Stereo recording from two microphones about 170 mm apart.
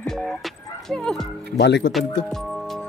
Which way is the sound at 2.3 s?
Centre (ahead or behind).